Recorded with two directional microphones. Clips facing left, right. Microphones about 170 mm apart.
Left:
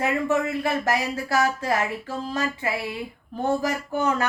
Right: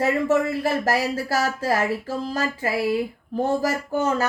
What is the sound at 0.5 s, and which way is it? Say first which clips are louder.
Speech: right 2 dB; 35° right (ahead or behind).